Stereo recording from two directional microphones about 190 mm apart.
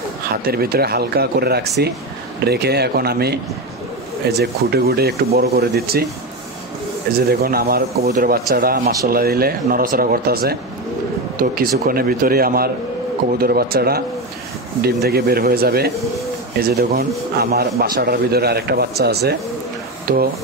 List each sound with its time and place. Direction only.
0.5 s a man's voice: 55° right (ahead or behind)
7.2 s a man's voice: 55° right (ahead or behind)